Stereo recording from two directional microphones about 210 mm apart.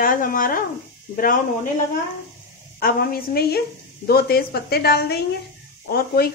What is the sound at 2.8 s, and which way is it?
Speech, 45° left (ahead or behind).